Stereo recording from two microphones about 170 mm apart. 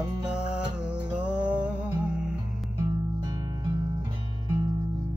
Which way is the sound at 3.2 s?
25° right (ahead or behind).